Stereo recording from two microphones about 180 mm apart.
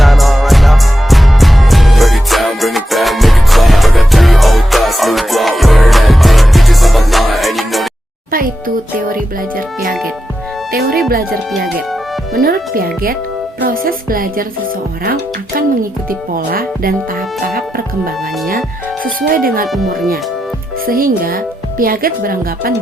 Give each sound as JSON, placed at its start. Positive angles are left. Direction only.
{"t": 0.0, "sound": "music", "side_deg": 0}
{"t": 8.3, "sound": "music", "side_deg": -50}
{"t": 10.7, "sound": "music", "side_deg": -55}
{"t": 12.3, "sound": "speech", "side_deg": -55}
{"t": 16.0, "sound": "speech", "side_deg": -55}
{"t": 19.6, "sound": "speech", "side_deg": 0}
{"t": 20.8, "sound": "speech", "side_deg": -50}